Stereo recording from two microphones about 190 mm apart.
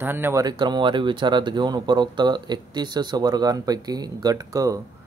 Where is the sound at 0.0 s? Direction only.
10° right (ahead or behind).